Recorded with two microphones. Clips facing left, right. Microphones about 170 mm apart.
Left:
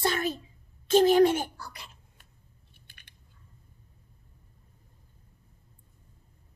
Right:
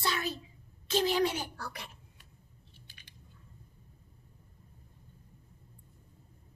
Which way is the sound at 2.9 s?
55° left (ahead or behind).